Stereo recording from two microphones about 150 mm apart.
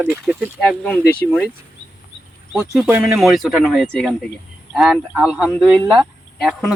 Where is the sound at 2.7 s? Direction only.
5° right (ahead or behind).